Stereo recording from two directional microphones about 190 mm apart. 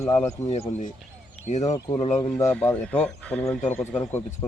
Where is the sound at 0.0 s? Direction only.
10° left (ahead or behind).